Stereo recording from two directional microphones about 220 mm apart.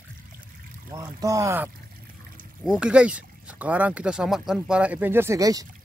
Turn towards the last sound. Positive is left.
turn(degrees=-15)  # may be behind; listen again after turning